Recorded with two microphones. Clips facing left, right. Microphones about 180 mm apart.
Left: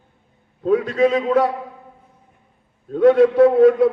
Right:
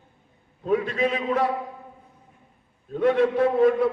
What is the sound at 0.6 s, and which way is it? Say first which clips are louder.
Speech: left 7 dB; 75° left (ahead or behind).